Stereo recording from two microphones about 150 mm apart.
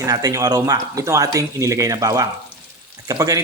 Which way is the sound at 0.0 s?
25° right (ahead or behind).